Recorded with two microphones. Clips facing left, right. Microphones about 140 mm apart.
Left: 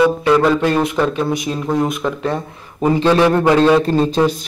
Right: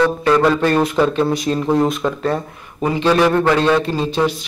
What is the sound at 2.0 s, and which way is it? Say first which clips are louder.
Speech: even; 5° right (ahead or behind).